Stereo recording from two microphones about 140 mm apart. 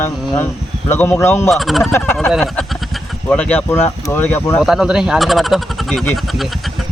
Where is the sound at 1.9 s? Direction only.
15° left (ahead or behind).